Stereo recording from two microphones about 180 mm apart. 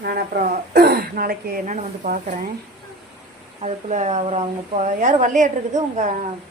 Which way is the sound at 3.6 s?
40° right (ahead or behind).